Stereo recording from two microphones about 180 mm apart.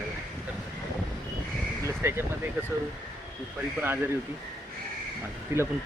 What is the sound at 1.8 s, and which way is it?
Speech, 10° right (ahead or behind).